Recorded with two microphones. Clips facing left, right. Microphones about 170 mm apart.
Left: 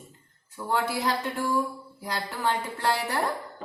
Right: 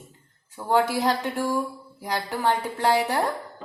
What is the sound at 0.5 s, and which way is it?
Speech, 60° right (ahead or behind).